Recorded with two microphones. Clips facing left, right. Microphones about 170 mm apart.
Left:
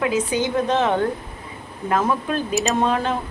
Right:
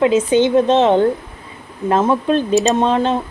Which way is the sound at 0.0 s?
25° right (ahead or behind).